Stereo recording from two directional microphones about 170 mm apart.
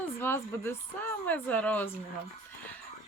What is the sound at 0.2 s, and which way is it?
Speech, 15° left (ahead or behind).